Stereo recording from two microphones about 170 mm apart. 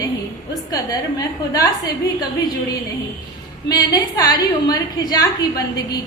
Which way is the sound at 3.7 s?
25° left (ahead or behind).